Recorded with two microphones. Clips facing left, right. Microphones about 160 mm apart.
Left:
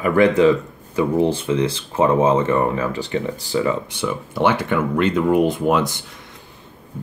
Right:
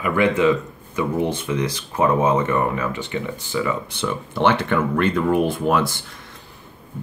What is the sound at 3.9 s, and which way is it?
Speech, 10° left (ahead or behind).